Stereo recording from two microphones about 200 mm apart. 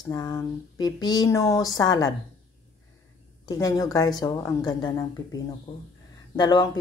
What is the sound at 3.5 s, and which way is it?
Speech, 20° left (ahead or behind).